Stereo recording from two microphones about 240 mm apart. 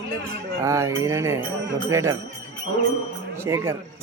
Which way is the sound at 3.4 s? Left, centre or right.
Centre.